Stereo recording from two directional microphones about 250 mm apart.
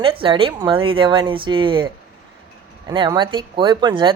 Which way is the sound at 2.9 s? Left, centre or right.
Centre.